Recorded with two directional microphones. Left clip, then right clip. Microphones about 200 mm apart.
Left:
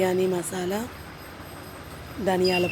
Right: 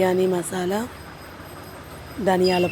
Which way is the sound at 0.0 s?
10° right (ahead or behind).